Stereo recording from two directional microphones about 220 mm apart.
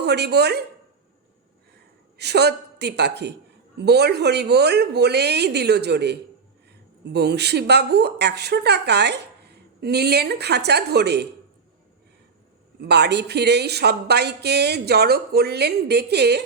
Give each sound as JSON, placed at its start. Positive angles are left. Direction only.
{"t": 0.0, "sound": "a woman's voice", "side_deg": -50}
{"t": 2.1, "sound": "a woman's voice", "side_deg": -50}
{"t": 12.8, "sound": "speech", "side_deg": -50}